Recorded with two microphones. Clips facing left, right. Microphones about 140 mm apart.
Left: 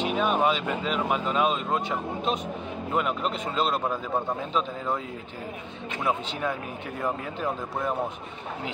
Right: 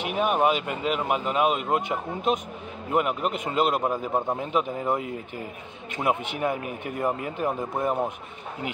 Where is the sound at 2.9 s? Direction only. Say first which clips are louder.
Right 3 dB; 10° right (ahead or behind).